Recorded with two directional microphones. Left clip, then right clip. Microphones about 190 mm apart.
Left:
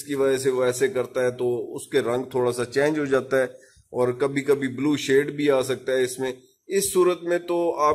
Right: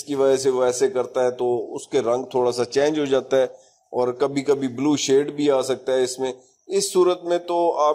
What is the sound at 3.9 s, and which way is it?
Speech, 20° right (ahead or behind).